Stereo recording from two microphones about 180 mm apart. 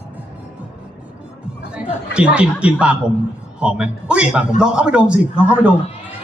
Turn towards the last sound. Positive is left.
turn(degrees=-5)  # may be behind; listen again after turning